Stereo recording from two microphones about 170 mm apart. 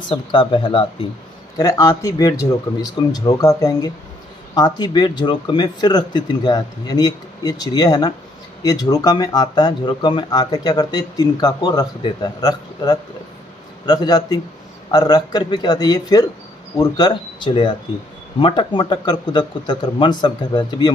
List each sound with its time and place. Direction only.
0.1 s speech: 30° left (ahead or behind)